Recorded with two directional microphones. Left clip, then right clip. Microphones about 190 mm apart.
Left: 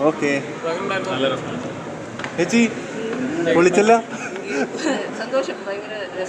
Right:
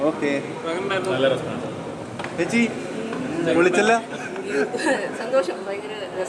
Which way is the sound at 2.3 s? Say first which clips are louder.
Left 3 dB; 30° left (ahead or behind).